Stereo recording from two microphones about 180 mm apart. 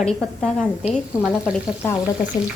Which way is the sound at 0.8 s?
5° right (ahead or behind).